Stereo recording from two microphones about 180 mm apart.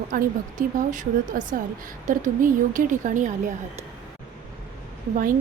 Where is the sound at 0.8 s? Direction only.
45° right (ahead or behind).